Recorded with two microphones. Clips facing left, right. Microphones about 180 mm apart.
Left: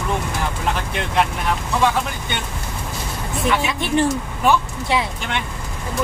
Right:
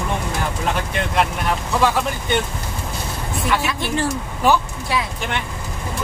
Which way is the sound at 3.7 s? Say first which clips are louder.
Left 3 dB; 20° left (ahead or behind).